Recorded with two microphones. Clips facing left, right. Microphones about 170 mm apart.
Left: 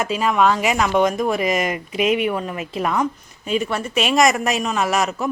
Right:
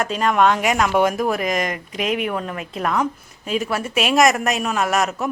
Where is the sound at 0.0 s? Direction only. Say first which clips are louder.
Even; 5° left (ahead or behind).